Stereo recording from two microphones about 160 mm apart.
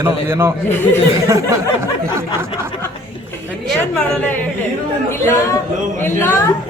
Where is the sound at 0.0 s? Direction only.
15° right (ahead or behind).